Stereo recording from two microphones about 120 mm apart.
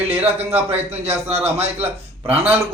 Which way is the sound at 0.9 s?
60° right (ahead or behind).